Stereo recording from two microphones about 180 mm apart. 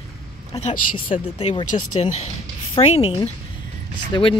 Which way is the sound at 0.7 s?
30° left (ahead or behind).